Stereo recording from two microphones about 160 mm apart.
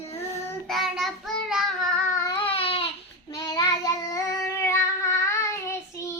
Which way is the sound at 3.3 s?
25° left (ahead or behind).